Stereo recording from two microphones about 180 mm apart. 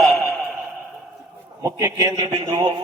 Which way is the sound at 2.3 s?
30° right (ahead or behind).